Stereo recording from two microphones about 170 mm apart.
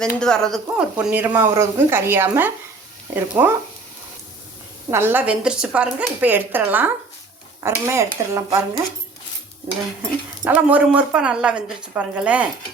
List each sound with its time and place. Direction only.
0.0 s speech: 5° left (ahead or behind)
0.9 s speech: 10° right (ahead or behind)
4.9 s speech: 15° right (ahead or behind)
10.4 s speech: 10° right (ahead or behind)